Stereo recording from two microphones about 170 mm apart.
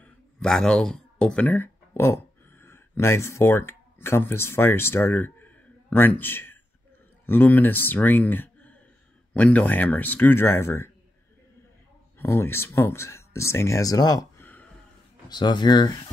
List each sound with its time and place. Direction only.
0.0 s a sound: 5° left (ahead or behind)
2.6 s speech: 15° left (ahead or behind)
12.2 s speech: 15° left (ahead or behind)